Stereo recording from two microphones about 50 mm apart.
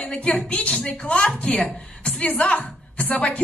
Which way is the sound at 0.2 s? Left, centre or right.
Left.